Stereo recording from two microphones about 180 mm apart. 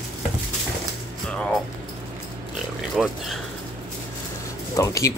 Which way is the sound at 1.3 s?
5° left (ahead or behind).